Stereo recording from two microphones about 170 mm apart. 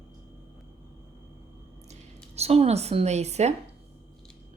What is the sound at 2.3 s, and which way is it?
Speech, 40° right (ahead or behind).